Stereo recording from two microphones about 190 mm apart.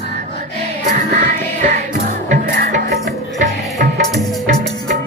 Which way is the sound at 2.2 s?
45° right (ahead or behind).